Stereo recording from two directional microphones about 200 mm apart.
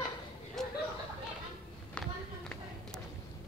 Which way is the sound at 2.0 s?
5° left (ahead or behind).